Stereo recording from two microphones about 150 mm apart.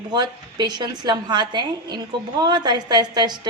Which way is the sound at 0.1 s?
30° right (ahead or behind).